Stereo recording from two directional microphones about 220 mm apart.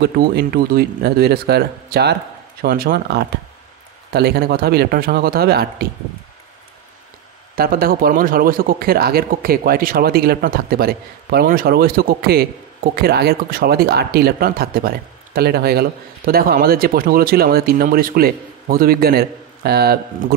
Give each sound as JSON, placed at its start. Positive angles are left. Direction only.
{"t": 0.0, "sound": "speech", "side_deg": -45}
{"t": 7.5, "sound": "speech", "side_deg": -45}